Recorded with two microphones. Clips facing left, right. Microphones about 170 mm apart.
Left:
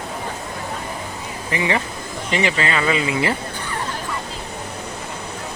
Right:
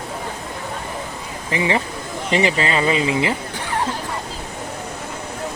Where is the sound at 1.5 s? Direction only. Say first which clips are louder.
Right 2 dB; 25° right (ahead or behind).